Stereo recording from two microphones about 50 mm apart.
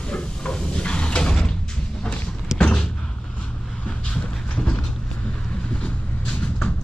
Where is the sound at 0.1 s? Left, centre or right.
Centre.